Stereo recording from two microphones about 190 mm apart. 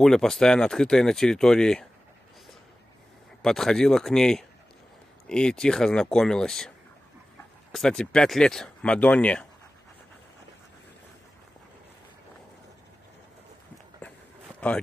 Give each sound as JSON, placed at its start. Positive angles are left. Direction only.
{"t": 0.0, "sound": "speech", "side_deg": 0}
{"t": 3.4, "sound": "speech", "side_deg": 0}
{"t": 7.7, "sound": "speech", "side_deg": 0}
{"t": 14.0, "sound": "a sound", "side_deg": 10}
{"t": 14.6, "sound": "speech", "side_deg": 5}